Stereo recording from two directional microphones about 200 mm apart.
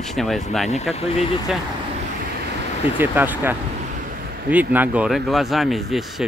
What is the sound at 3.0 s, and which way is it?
Speech, 10° right (ahead or behind).